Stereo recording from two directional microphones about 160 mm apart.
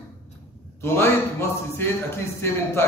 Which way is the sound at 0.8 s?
15° left (ahead or behind).